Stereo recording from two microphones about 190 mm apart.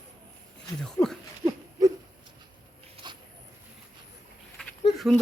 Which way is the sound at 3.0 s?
30° right (ahead or behind).